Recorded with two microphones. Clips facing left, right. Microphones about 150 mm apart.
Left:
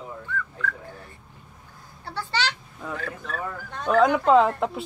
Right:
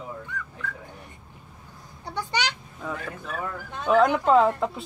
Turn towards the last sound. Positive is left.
turn(degrees=0)  # may be behind; listen again after turning